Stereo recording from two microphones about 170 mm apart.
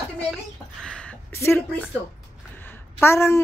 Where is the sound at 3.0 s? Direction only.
15° left (ahead or behind).